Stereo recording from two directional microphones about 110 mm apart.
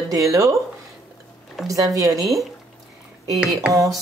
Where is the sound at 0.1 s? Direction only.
30° right (ahead or behind).